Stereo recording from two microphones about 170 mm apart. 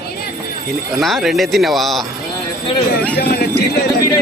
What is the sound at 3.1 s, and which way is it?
Speech, 65° left (ahead or behind).